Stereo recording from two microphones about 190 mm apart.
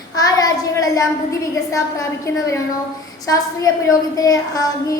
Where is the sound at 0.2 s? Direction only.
20° left (ahead or behind).